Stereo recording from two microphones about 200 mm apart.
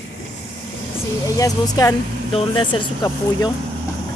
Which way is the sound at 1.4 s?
20° left (ahead or behind).